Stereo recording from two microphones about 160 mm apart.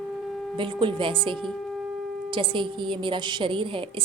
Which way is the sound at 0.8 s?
35° right (ahead or behind).